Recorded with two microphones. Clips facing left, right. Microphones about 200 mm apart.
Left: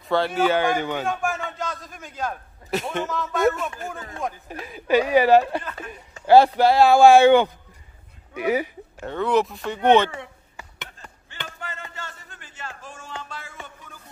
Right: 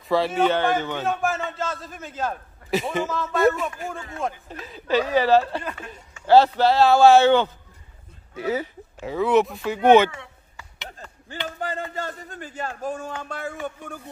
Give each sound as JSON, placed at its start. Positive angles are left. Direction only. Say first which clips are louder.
{"t": 0.1, "sound": "speech", "louder": "even", "side_deg": 0}
{"t": 1.4, "sound": "a sound", "louder": "right 2 dB", "side_deg": 0}
{"t": 1.9, "sound": "a man's voice", "louder": "right 2 dB", "side_deg": -5}
{"t": 4.5, "sound": "speech", "louder": "left 7 dB", "side_deg": 10}
{"t": 9.0, "sound": "a man's voice", "louder": "right 2 dB", "side_deg": -5}
{"t": 11.6, "sound": "music", "louder": "right 10 dB", "side_deg": -35}
{"t": 12.2, "sound": "speech", "louder": "right 9 dB", "side_deg": -40}
{"t": 13.0, "sound": "a sound", "louder": "right 6 dB", "side_deg": -50}